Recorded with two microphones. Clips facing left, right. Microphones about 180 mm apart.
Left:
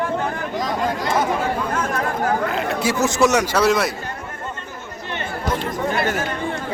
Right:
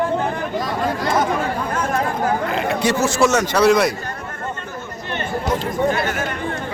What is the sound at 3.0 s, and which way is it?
Speech, 20° left (ahead or behind).